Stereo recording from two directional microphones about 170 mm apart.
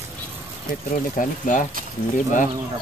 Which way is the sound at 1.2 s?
55° left (ahead or behind).